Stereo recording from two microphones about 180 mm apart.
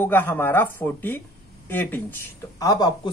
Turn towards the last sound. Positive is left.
turn(degrees=20)  # may be behind; listen again after turning